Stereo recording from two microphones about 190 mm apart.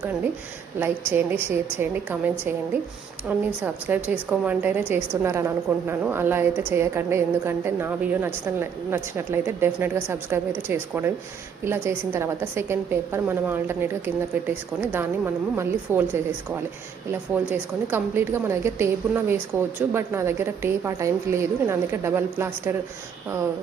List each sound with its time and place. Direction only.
0.8 s a woman's voice: 10° right (ahead or behind)
3.2 s a woman's voice: 10° right (ahead or behind)